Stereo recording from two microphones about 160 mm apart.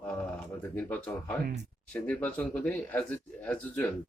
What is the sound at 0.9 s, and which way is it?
Speech, 10° left (ahead or behind).